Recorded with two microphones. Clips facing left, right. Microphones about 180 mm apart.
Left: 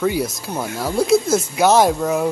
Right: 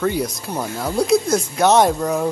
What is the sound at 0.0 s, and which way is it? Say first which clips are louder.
A man's voice: left 1 dB; 5° left (ahead or behind).